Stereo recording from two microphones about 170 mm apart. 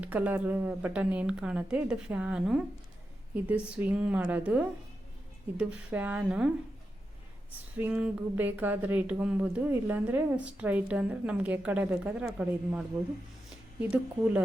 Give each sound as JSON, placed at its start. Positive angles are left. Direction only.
{"t": 0.0, "sound": "speech", "side_deg": -10}
{"t": 7.8, "sound": "speech", "side_deg": -10}